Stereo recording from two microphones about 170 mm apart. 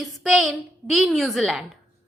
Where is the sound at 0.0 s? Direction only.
Centre (ahead or behind).